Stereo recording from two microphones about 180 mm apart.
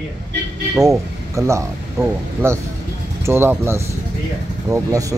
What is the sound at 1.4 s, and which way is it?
Speech, 20° right (ahead or behind).